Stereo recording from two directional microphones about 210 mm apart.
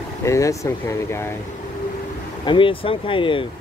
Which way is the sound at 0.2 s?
15° left (ahead or behind).